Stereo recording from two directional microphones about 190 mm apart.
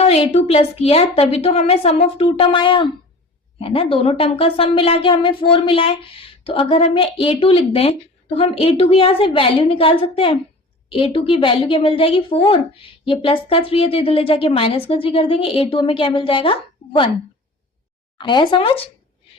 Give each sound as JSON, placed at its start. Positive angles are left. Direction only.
{"t": 0.0, "sound": "a woman's voice", "side_deg": 35}
{"t": 18.2, "sound": "speech", "side_deg": 25}